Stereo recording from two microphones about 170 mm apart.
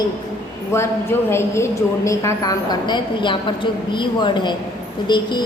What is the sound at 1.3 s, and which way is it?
A woman's voice, 15° left (ahead or behind).